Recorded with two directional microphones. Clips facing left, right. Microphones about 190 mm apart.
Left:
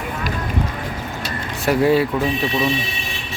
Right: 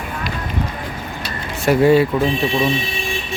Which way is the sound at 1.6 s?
Centre (ahead or behind).